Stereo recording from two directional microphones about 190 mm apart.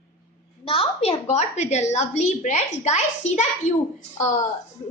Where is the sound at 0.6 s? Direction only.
30° left (ahead or behind).